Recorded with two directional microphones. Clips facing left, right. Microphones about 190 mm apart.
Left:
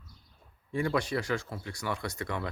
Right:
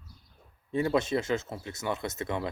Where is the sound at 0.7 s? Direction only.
25° right (ahead or behind).